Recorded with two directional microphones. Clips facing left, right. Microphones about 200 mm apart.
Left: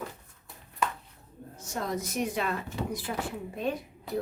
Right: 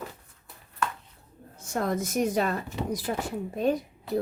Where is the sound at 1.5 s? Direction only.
55° right (ahead or behind).